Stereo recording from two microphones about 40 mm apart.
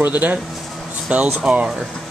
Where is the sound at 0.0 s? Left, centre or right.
Right.